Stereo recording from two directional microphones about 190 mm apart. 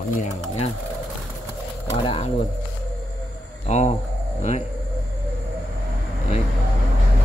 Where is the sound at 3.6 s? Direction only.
35° left (ahead or behind).